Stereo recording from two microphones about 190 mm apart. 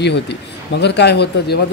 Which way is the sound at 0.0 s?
65° left (ahead or behind).